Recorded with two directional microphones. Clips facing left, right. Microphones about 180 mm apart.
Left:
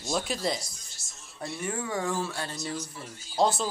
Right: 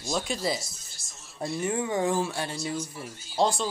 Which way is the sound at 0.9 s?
25° right (ahead or behind).